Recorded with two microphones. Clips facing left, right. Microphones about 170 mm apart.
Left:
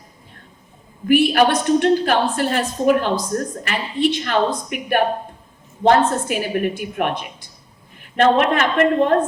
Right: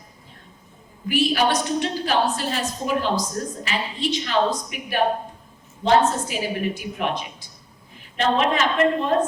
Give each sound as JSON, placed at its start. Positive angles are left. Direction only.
{"t": 1.0, "sound": "a woman's voice", "side_deg": 55}